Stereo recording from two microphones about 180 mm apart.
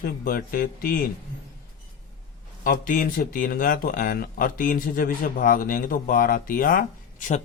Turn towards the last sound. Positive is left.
turn(degrees=45)  # may be behind; listen again after turning